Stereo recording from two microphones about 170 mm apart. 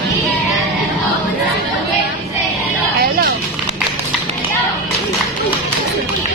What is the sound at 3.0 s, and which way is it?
Music, 65° right (ahead or behind).